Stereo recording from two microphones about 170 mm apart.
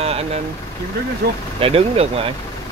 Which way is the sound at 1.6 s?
35° right (ahead or behind).